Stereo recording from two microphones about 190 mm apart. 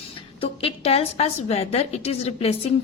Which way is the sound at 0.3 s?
30° left (ahead or behind).